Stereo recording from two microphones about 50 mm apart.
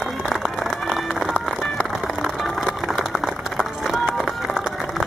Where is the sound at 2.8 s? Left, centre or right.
Centre.